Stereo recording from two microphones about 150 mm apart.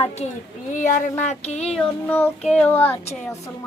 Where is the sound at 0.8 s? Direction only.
60° left (ahead or behind).